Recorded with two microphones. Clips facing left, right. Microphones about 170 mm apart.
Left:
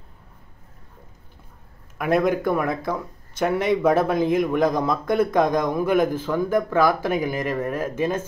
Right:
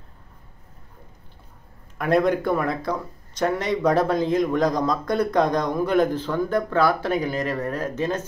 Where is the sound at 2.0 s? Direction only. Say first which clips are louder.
Even; 5° left (ahead or behind).